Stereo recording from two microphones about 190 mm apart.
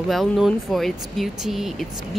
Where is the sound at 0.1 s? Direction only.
Centre (ahead or behind).